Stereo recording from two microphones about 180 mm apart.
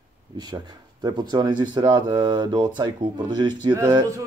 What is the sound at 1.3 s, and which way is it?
Speech, 25° right (ahead or behind).